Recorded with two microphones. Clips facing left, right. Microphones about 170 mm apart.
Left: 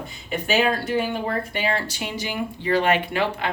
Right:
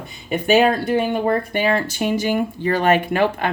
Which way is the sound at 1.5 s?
55° right (ahead or behind).